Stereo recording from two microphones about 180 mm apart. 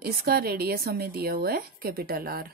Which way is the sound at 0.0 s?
60° right (ahead or behind).